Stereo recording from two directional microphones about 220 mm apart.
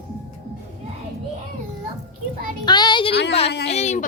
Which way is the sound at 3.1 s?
50° left (ahead or behind).